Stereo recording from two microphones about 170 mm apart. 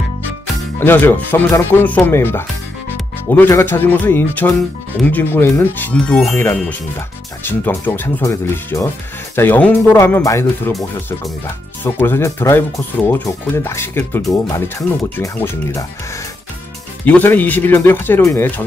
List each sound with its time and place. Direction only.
0.7 s speech: 10° left (ahead or behind)
17.0 s speech: 10° left (ahead or behind)